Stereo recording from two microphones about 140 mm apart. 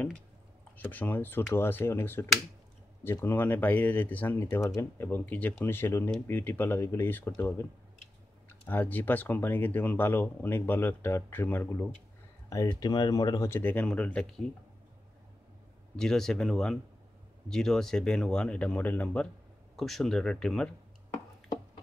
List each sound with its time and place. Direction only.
0.7 s speech: 10° left (ahead or behind)
12.4 s speech: 25° left (ahead or behind)
13.6 s speech: 10° left (ahead or behind)
16.0 s speech: 5° left (ahead or behind)